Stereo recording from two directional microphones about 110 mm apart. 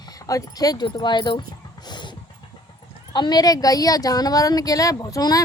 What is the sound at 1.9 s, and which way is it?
Vehicle, 45° left (ahead or behind).